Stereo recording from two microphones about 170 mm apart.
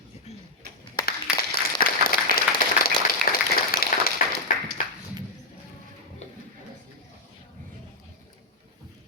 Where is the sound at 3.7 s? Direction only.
55° left (ahead or behind).